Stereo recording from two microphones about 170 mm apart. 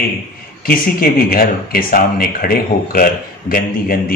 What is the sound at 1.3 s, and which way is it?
Speech, 60° left (ahead or behind).